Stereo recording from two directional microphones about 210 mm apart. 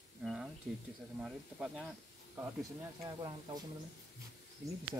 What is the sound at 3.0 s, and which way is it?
Speech, 20° right (ahead or behind).